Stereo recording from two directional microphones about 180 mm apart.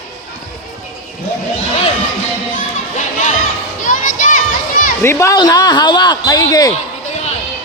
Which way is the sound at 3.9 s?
45° left (ahead or behind).